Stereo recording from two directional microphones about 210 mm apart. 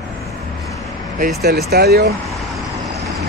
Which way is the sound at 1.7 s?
50° right (ahead or behind).